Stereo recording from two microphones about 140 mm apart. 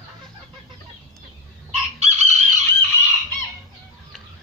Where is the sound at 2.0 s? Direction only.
50° right (ahead or behind).